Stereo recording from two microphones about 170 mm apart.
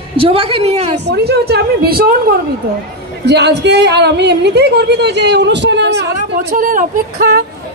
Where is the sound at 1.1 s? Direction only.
70° right (ahead or behind).